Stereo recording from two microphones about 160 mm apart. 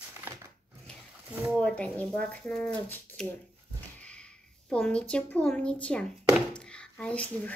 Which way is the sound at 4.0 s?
5° left (ahead or behind).